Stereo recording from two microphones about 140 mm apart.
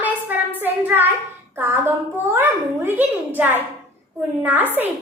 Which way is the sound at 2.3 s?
15° right (ahead or behind).